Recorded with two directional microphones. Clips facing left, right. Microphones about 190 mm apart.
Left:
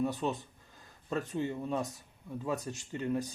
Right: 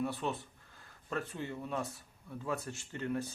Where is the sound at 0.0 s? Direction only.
20° left (ahead or behind).